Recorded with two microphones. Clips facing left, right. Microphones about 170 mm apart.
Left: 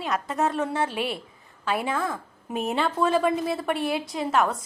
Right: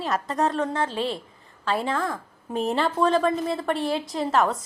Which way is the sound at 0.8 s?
25° right (ahead or behind).